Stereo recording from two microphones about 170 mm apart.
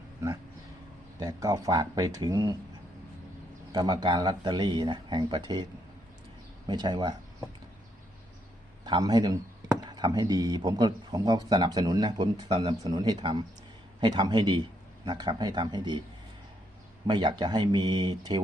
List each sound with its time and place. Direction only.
1.2 s speech: 20° right (ahead or behind)
3.7 s speech: 25° right (ahead or behind)
6.7 s speech: 25° right (ahead or behind)
8.8 s a man's voice: 25° right (ahead or behind)
17.1 s speech: 25° right (ahead or behind)